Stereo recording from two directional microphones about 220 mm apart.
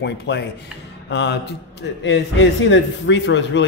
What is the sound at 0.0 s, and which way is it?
A man's voice, 50° left (ahead or behind).